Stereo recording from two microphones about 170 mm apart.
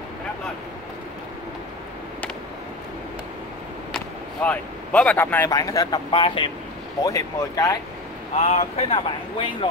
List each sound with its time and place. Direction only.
3.9 s speech: 10° left (ahead or behind); by 6.5 s 30° left (ahead or behind)
7.0 s speech: 20° left (ahead or behind)
8.4 s speech: 40° left (ahead or behind)